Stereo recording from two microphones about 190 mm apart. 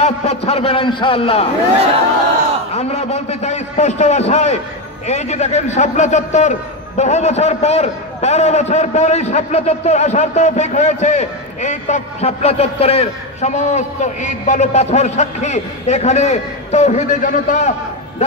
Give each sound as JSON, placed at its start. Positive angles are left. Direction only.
{"t": 0.0, "sound": "a man's voice", "side_deg": 35}
{"t": 2.7, "sound": "a man's voice", "side_deg": 35}